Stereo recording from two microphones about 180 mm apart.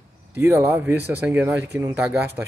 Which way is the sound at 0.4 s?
10° right (ahead or behind).